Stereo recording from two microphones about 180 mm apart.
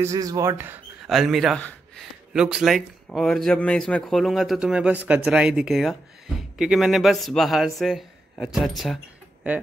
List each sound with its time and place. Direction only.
0.0 s speech: 20° right (ahead or behind)
1.0 s a man's voice: centre (ahead or behind)